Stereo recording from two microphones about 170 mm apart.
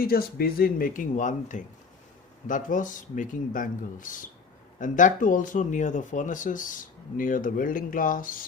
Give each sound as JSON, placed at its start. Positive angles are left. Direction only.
{"t": 0.0, "sound": "speech", "side_deg": 60}